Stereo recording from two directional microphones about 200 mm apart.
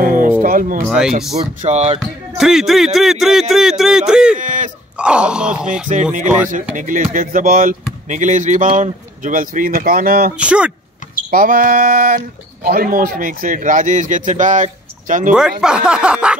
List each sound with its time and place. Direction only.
0.0 s music: 40° right (ahead or behind)
0.4 s speech: 45° right (ahead or behind)
0.8 s a man's voice: centre (ahead or behind)
1.4 s speech: 35° right (ahead or behind)
2.0 s a man's voice: centre (ahead or behind)
4.4 s a sound: 40° right (ahead or behind)
4.9 s groan: 5° right (ahead or behind)
5.9 s speech: 35° right (ahead or behind)
10.3 s a man's voice: 5° right (ahead or behind)
11.2 s a sound: 45° right (ahead or behind)
12.6 s speech: 45° right (ahead or behind)
15.6 s a man's voice: 5° right (ahead or behind)